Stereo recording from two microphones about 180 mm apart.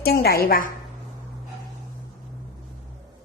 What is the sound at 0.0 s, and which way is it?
Speech, 60° left (ahead or behind).